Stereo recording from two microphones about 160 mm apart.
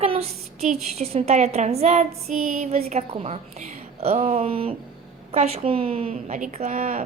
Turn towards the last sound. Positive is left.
turn(degrees=-55)  # may be behind; listen again after turning